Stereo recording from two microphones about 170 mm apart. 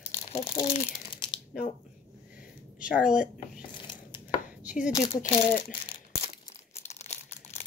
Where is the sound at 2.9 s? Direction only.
50° left (ahead or behind).